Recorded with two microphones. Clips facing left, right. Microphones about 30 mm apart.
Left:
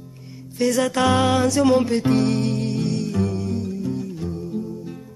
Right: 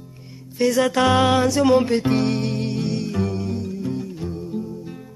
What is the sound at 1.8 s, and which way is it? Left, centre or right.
Music, centre.